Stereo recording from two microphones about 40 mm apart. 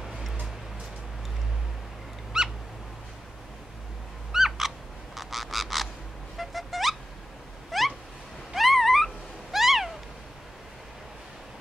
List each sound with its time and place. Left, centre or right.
2.3 s owl: centre
4.3 s frog: centre
6.3 s a sound: centre
8.5 s cat: centre